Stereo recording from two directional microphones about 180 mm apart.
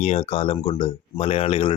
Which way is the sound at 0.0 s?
35° left (ahead or behind).